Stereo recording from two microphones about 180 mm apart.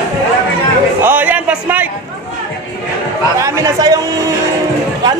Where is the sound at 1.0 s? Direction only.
10° right (ahead or behind).